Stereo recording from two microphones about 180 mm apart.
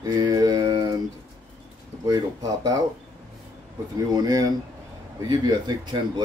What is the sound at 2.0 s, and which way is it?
Speech, 20° right (ahead or behind).